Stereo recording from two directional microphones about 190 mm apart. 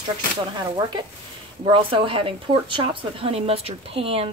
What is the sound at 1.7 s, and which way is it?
Speech, 30° right (ahead or behind).